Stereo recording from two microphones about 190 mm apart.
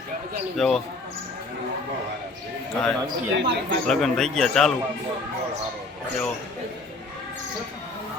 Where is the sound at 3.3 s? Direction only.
60° right (ahead or behind).